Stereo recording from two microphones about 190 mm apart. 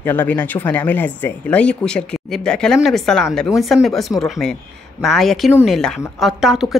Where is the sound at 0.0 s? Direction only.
10° left (ahead or behind).